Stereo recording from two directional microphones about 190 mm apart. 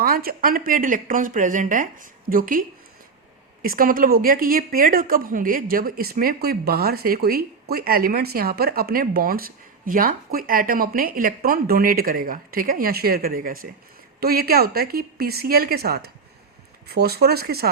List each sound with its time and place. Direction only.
0.0 s speech: 50° right (ahead or behind)